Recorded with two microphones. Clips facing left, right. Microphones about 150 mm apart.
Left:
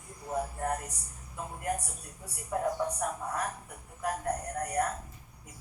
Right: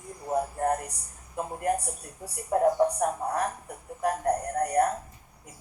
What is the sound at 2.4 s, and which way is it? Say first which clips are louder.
Speech: right 8 dB; 45° right (ahead or behind).